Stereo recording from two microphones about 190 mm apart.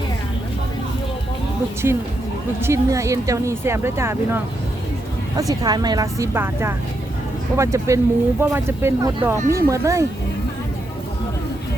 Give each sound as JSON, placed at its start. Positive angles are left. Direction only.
{"t": 1.8, "sound": "speech", "side_deg": -15}
{"t": 5.4, "sound": "speech", "side_deg": -20}